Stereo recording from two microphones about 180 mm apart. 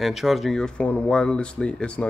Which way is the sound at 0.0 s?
Centre (ahead or behind).